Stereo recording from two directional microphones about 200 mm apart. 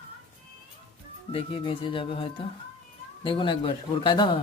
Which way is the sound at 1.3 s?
25° left (ahead or behind).